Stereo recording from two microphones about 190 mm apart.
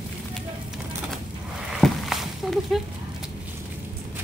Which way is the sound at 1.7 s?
Centre (ahead or behind).